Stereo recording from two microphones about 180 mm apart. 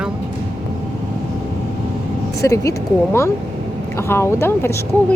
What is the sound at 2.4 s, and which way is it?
Speech, 15° left (ahead or behind).